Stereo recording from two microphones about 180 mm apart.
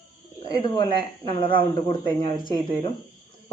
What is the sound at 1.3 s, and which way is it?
Speech, 30° left (ahead or behind).